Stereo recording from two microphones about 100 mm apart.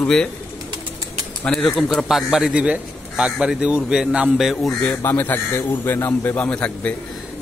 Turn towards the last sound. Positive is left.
turn(degrees=10)  # may be behind; listen again after turning